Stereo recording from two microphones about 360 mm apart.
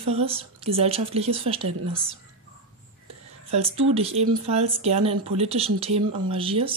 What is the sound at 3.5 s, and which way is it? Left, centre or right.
Speech, centre.